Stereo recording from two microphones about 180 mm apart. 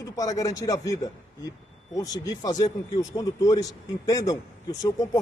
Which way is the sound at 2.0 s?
20° left (ahead or behind).